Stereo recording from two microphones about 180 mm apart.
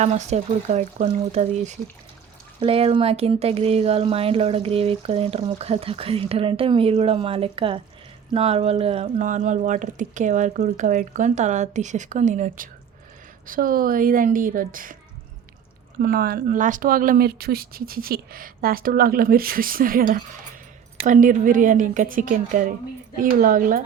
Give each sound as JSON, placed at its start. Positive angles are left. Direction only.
{"t": 0.0, "sound": "speech", "side_deg": -40}
{"t": 16.0, "sound": "speech", "side_deg": -55}